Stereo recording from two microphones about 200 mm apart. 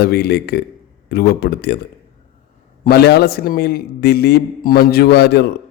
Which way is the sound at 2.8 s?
55° left (ahead or behind).